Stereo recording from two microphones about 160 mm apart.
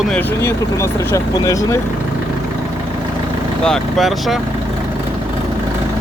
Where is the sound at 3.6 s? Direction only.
Centre (ahead or behind).